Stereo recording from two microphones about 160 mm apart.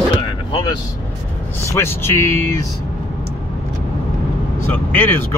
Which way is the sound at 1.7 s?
15° left (ahead or behind).